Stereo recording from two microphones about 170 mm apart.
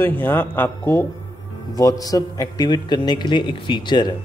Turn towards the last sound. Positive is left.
turn(degrees=25)  # may be behind; listen again after turning